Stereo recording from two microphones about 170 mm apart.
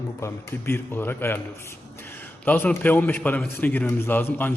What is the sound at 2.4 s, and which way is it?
A man's voice, 10° left (ahead or behind).